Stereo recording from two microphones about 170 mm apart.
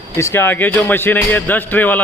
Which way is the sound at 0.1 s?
15° left (ahead or behind).